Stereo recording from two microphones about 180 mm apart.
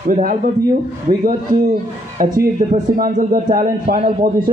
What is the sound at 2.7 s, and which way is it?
A man's voice, 45° right (ahead or behind).